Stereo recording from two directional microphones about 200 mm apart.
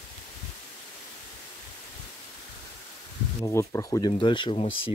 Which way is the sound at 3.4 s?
15° left (ahead or behind).